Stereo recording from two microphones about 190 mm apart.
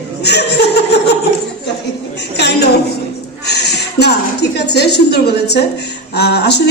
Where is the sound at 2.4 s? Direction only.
60° left (ahead or behind).